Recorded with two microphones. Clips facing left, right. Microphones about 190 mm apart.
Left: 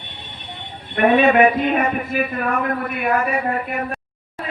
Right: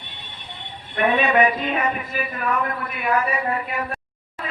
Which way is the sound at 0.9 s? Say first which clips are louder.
Left 5 dB; 50° left (ahead or behind).